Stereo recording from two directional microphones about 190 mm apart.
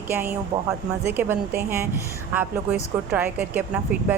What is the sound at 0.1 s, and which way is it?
A woman's voice, 10° right (ahead or behind).